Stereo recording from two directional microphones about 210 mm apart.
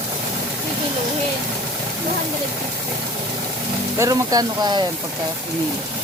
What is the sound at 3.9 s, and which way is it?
Speech, 15° right (ahead or behind).